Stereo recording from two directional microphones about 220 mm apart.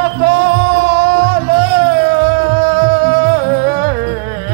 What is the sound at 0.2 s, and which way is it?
Music, 50° right (ahead or behind).